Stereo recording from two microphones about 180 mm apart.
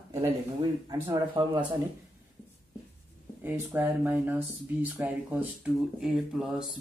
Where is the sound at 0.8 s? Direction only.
20° right (ahead or behind).